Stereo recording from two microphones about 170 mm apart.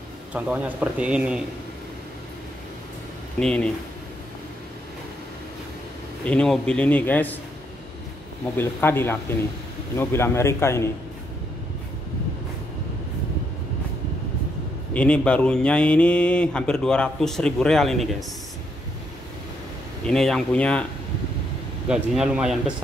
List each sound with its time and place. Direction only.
0.3 s a man's voice: 10° right (ahead or behind)
3.3 s speech: 5° left (ahead or behind)
6.2 s a man's voice: 5° left (ahead or behind)
8.5 s a man's voice: 15° left (ahead or behind)
15.0 s speech: 5° left (ahead or behind)
20.1 s speech: centre (ahead or behind)
21.8 s speech: 5° right (ahead or behind)